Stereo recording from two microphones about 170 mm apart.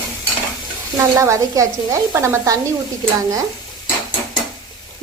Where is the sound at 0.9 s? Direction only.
15° right (ahead or behind).